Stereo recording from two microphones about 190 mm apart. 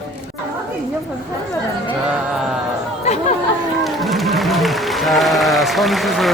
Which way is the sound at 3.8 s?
Centre (ahead or behind).